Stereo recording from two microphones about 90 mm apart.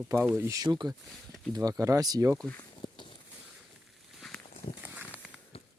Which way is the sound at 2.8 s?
65° left (ahead or behind).